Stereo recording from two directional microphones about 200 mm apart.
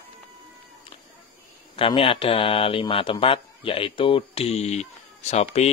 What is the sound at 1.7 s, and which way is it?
Speech, 25° left (ahead or behind).